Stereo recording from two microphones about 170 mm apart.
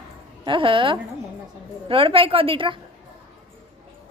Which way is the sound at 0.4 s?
30° right (ahead or behind).